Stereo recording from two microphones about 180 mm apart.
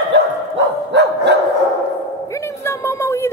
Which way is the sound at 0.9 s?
70° right (ahead or behind).